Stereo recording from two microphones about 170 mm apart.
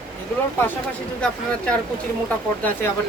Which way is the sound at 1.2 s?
5° left (ahead or behind).